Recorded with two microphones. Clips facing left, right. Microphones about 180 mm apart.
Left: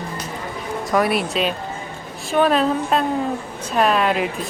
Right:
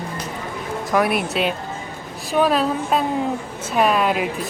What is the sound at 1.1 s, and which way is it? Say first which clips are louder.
Speech: even; 60° right (ahead or behind).